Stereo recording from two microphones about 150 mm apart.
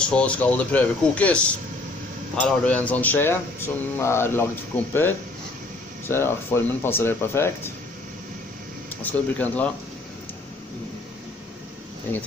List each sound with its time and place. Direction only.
0.0 s speech: 5° left (ahead or behind)
6.0 s speech: 15° left (ahead or behind)
9.0 s speech: 10° left (ahead or behind)